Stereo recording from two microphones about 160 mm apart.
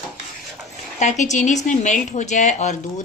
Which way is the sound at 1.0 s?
45° left (ahead or behind).